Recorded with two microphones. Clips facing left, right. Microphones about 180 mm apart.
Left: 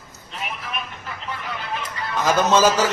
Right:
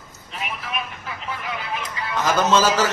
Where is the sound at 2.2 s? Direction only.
15° left (ahead or behind).